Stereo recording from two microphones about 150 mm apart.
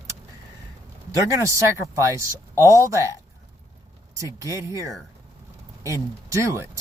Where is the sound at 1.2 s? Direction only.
20° right (ahead or behind).